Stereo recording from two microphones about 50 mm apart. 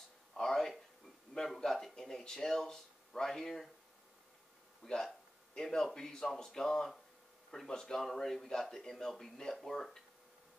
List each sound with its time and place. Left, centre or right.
0.3 s a sound: centre
2.0 s speech: centre
4.8 s a man's voice: centre